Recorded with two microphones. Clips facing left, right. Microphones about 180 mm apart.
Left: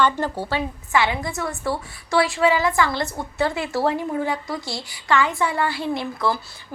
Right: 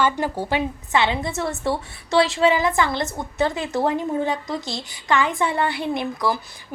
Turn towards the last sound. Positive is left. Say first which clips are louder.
# right 1 dB
turn(degrees=-20)  # may be behind; listen again after turning